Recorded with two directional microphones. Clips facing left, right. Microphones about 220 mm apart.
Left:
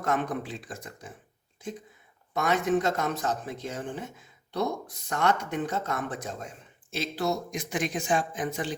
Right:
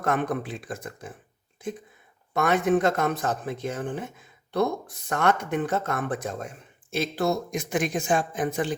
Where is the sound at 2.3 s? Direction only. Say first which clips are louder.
Right 3 dB; 55° right (ahead or behind).